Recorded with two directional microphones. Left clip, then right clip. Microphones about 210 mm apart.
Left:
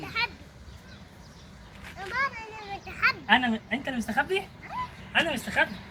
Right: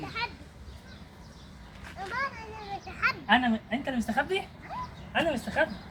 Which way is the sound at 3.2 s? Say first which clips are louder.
Left 1 dB; 10° right (ahead or behind).